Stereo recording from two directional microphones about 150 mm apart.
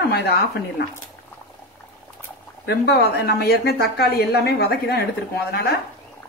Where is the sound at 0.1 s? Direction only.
90° left.